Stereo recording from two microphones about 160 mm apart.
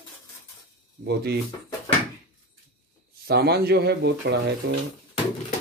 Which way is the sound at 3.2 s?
80° right.